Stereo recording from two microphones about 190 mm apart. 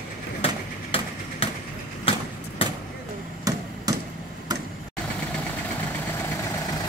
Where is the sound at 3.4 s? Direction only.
20° right (ahead or behind).